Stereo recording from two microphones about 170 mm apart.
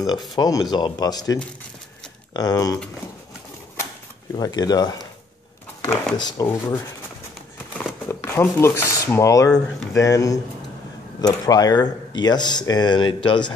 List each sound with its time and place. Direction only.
0.4 s speech: 20° left (ahead or behind)
4.4 s speech: 25° left (ahead or behind)
6.1 s speech: 25° left (ahead or behind)
6.4 s speech: 15° left (ahead or behind)
8.1 s speech: 15° left (ahead or behind)